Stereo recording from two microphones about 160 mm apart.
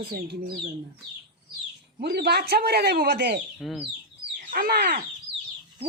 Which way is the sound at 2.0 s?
90° right.